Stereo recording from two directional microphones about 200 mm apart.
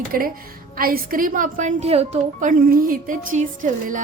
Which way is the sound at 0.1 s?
45° right (ahead or behind).